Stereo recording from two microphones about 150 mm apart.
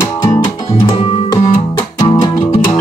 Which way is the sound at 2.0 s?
40° left (ahead or behind).